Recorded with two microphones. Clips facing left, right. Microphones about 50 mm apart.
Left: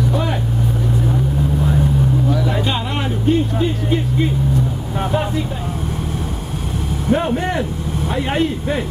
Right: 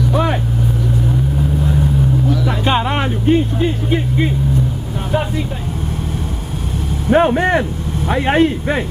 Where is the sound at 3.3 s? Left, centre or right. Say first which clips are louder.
Right 2 dB; right.